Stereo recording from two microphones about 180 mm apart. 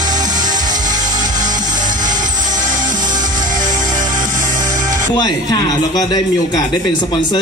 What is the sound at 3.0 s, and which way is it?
Music, 25° right (ahead or behind).